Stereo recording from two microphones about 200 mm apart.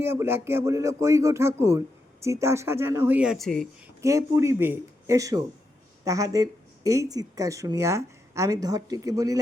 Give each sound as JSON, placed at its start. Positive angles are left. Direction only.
{"t": 0.0, "sound": "speech", "side_deg": -10}
{"t": 4.0, "sound": "speech", "side_deg": -15}